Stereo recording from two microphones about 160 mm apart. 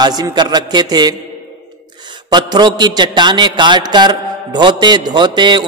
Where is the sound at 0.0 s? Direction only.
25° right (ahead or behind).